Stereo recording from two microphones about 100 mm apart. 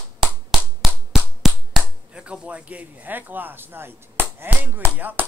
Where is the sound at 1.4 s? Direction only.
5° right (ahead or behind).